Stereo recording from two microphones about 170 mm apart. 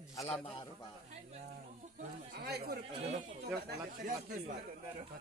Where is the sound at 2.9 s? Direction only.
40° right (ahead or behind).